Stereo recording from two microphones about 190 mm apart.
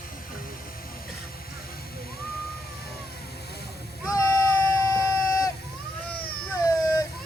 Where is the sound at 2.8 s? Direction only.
55° left (ahead or behind).